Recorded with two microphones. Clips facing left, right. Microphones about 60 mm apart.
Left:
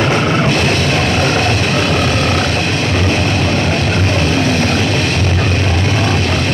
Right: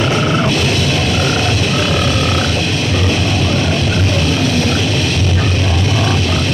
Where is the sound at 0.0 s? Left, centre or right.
Left.